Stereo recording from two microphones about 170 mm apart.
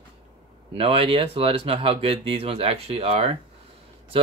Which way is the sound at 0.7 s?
35° right (ahead or behind).